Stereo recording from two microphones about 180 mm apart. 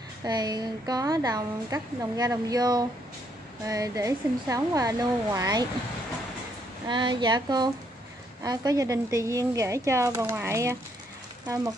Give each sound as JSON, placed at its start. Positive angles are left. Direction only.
{"t": 0.2, "sound": "a woman's voice", "side_deg": -20}
{"t": 6.9, "sound": "a woman's voice", "side_deg": -25}